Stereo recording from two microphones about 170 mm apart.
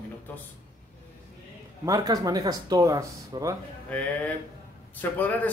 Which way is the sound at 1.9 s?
20° right (ahead or behind).